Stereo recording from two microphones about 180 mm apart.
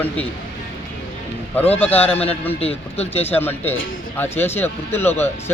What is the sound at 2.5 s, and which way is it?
Speech, 35° left (ahead or behind).